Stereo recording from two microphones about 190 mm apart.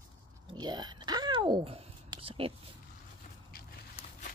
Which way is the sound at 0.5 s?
20° right (ahead or behind).